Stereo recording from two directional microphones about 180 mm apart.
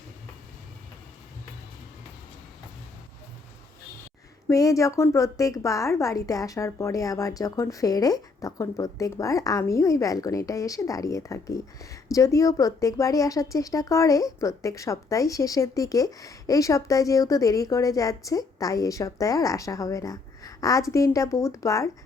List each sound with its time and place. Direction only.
4.4 s a woman's voice: 20° left (ahead or behind)